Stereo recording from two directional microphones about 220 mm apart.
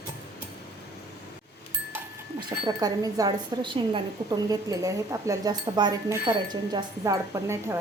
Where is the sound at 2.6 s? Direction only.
15° right (ahead or behind).